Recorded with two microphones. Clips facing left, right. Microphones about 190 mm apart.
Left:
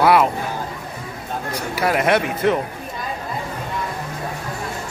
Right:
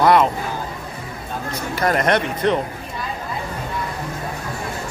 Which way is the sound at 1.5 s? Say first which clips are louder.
Even; 5° left (ahead or behind).